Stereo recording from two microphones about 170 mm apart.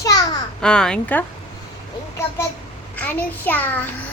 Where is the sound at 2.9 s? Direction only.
10° left (ahead or behind).